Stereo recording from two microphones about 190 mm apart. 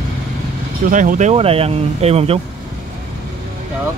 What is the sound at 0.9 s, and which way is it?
Speech, 40° right (ahead or behind).